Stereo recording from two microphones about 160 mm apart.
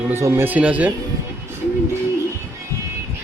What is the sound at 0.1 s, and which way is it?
Speech, 15° right (ahead or behind).